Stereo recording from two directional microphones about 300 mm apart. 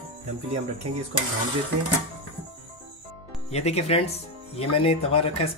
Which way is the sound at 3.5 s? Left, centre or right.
Left.